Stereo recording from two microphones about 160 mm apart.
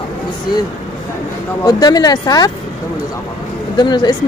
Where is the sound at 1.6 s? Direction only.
25° left (ahead or behind).